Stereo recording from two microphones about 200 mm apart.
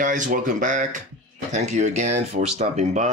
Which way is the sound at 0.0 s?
40° right (ahead or behind).